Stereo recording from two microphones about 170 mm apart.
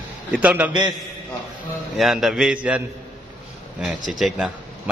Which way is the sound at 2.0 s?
Centre (ahead or behind).